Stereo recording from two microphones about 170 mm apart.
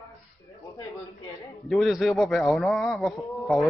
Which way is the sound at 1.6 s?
Centre (ahead or behind).